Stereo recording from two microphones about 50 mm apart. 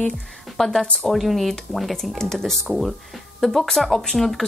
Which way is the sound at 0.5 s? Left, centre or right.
Centre.